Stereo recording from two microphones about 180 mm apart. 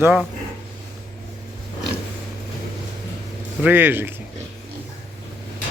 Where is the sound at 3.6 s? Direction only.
10° right (ahead or behind).